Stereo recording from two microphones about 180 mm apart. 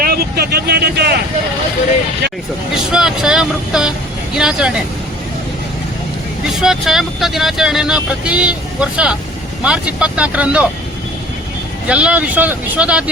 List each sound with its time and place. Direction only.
0.0 s speech: 60° right (ahead or behind)
2.9 s speech: 5° right (ahead or behind)
6.6 s speech: centre (ahead or behind)
11.9 s speech: 5° right (ahead or behind)